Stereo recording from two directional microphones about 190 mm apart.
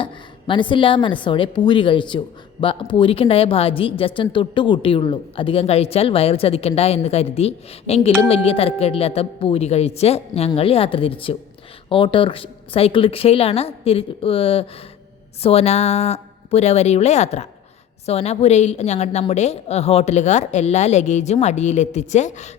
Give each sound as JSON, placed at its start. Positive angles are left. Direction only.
{"t": 0.0, "sound": "a woman's voice", "side_deg": 25}